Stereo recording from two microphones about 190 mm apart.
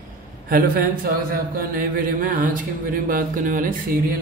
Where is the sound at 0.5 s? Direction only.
50° right (ahead or behind).